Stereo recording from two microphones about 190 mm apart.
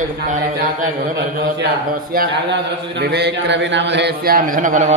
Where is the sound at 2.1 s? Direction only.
50° right (ahead or behind).